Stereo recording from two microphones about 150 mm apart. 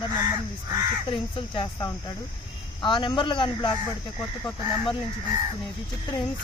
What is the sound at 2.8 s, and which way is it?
Speech, 30° left (ahead or behind).